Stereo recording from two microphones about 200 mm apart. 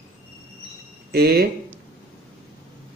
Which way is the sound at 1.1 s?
50° right (ahead or behind).